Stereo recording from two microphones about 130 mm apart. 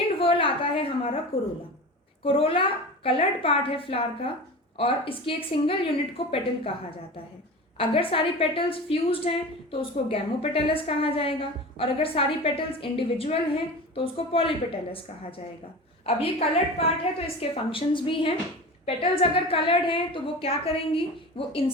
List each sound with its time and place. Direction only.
0.1 s a woman's voice: 45° left (ahead or behind)
2.2 s a woman's voice: 45° left (ahead or behind)
7.8 s a woman's voice: 45° left (ahead or behind)